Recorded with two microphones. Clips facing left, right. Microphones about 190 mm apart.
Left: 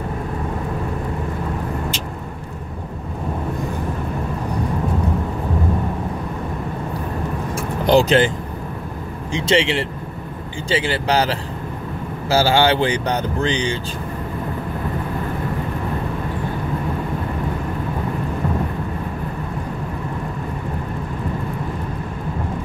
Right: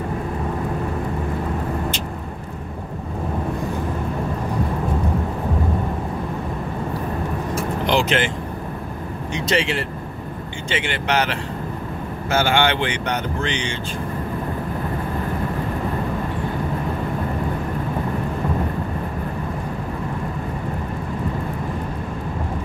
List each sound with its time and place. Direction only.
7.8 s speech: 40° left (ahead or behind)
9.3 s speech: 25° left (ahead or behind)